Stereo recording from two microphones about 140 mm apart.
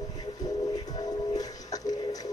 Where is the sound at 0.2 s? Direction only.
25° left (ahead or behind).